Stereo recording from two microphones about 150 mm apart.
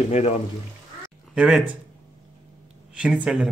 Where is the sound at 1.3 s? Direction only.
5° right (ahead or behind).